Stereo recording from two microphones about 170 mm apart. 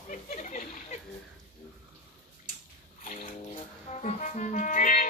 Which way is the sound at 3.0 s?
50° left (ahead or behind).